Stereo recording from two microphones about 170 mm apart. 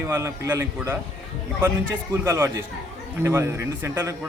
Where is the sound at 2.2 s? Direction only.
15° right (ahead or behind).